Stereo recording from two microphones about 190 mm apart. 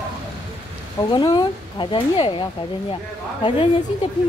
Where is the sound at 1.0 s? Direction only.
25° left (ahead or behind).